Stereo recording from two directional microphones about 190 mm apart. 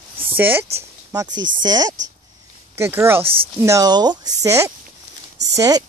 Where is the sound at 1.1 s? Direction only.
20° right (ahead or behind).